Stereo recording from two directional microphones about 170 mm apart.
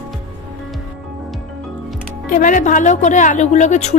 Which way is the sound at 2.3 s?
50° left (ahead or behind).